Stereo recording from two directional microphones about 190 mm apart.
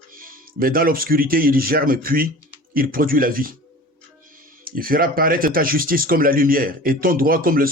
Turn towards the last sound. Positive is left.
turn(degrees=-50)  # may be behind; listen again after turning